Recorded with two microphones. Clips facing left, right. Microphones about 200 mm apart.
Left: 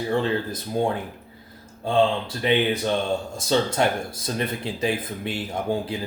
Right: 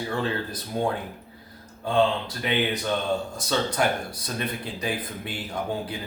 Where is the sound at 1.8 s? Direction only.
25° left (ahead or behind).